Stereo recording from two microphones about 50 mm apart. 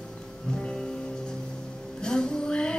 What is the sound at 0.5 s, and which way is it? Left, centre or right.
Music, centre.